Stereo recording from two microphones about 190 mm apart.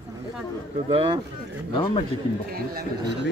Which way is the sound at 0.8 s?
20° right (ahead or behind).